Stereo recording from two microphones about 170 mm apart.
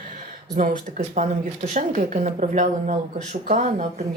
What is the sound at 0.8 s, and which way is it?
Speech, 45° right (ahead or behind).